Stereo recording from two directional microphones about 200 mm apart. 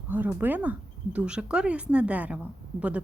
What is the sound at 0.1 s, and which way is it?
Speech, 10° right (ahead or behind).